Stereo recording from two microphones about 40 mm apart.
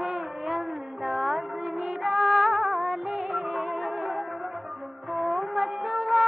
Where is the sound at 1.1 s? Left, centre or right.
Centre.